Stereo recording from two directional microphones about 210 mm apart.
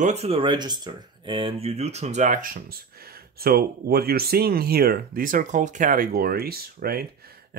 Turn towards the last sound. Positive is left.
turn(degrees=-45)  # may be behind; listen again after turning